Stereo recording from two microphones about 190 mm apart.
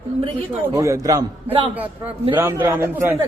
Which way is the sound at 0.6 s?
15° right (ahead or behind).